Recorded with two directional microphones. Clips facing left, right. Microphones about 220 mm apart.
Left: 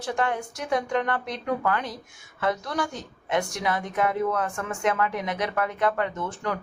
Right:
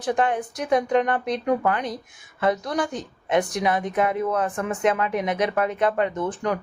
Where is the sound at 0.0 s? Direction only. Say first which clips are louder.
Right 4 dB; 20° right (ahead or behind).